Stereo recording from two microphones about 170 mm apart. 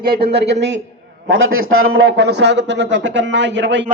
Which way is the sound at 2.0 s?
80° right.